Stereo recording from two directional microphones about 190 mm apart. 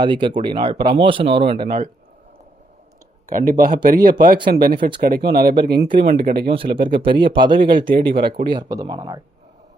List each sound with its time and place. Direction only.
0.0 s speech: 25° right (ahead or behind)
3.2 s speech: 45° right (ahead or behind)
6.5 s speech: 25° right (ahead or behind)